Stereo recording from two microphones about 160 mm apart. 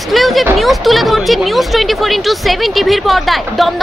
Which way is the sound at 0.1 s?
Centre (ahead or behind).